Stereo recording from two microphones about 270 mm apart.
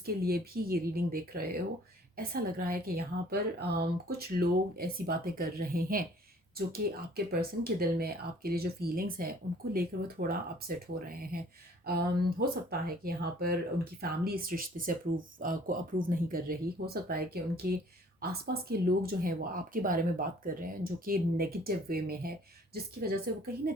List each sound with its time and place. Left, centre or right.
0.0 s speech: right